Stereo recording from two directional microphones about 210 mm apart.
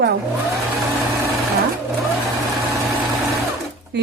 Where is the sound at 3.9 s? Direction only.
55° right (ahead or behind).